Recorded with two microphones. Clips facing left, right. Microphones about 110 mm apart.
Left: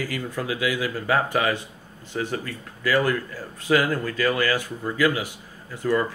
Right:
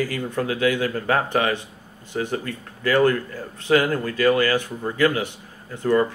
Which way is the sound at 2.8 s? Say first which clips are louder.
Right 4 dB; 45° right (ahead or behind).